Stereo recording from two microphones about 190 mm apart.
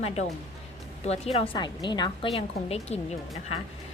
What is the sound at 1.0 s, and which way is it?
A woman's voice, 35° left (ahead or behind).